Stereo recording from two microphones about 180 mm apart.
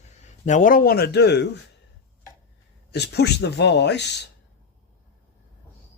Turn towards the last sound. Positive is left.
turn(degrees=70)  # may be behind; listen again after turning